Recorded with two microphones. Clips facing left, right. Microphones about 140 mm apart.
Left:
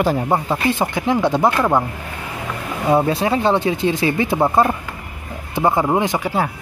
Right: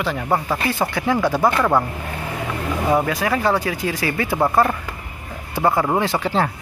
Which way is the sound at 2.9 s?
25° left (ahead or behind).